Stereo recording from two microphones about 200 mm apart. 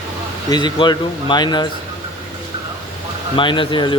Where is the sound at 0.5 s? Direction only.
20° left (ahead or behind).